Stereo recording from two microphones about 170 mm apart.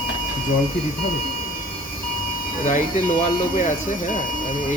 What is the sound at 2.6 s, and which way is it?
Speech, 45° left (ahead or behind).